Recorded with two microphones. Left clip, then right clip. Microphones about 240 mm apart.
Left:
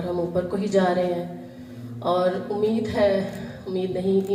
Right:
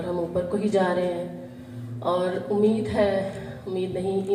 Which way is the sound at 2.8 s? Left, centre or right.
Left.